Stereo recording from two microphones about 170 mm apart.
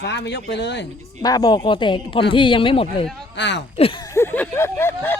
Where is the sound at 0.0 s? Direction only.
90° left.